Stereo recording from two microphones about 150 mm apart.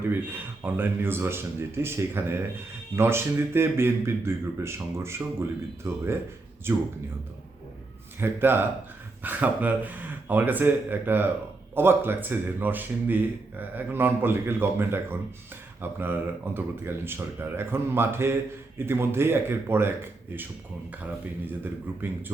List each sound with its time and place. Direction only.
0.6 s a man's voice: 15° right (ahead or behind)
8.2 s a man's voice: 15° right (ahead or behind)